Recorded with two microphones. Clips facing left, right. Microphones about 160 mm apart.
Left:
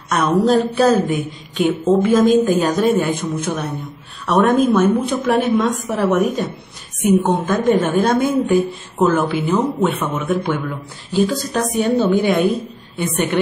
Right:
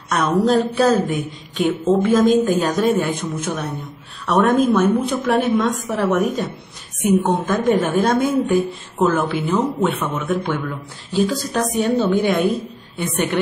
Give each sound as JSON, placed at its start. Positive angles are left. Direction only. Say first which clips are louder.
{"t": 0.1, "sound": "a woman's voice", "louder": "left 2 dB", "side_deg": 0}